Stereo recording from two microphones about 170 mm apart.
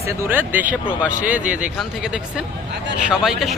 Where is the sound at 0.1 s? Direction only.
15° right (ahead or behind).